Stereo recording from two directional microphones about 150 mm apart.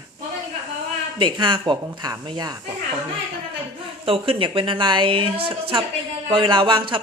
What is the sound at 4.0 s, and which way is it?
A woman's voice, 40° right (ahead or behind).